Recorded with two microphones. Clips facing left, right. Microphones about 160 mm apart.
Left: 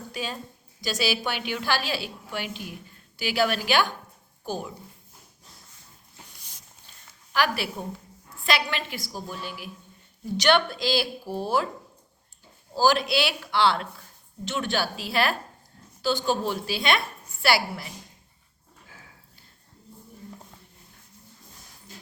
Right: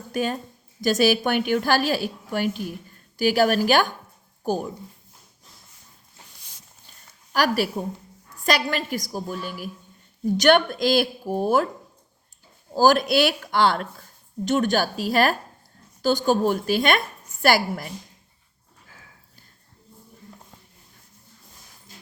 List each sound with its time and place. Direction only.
0.1 s a woman's voice: 50° right (ahead or behind)
7.3 s a woman's voice: 40° right (ahead or behind)
12.7 s a woman's voice: 50° right (ahead or behind)